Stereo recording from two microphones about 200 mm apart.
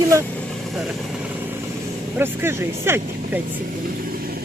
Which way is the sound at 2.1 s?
10° right (ahead or behind).